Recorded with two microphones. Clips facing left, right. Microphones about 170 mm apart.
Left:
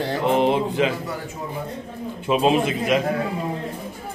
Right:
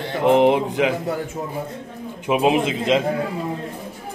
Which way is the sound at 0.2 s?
15° right (ahead or behind).